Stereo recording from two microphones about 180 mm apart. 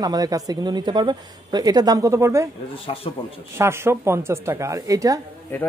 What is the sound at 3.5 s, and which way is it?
Speech, 15° right (ahead or behind).